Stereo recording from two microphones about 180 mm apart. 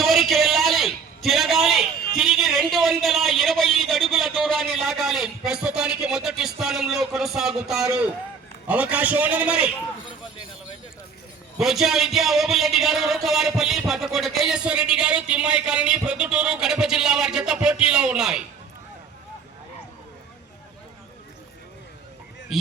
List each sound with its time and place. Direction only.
0.0 s a sound: centre (ahead or behind)
8.6 s a man's voice: 10° right (ahead or behind)
11.5 s a man's voice: centre (ahead or behind)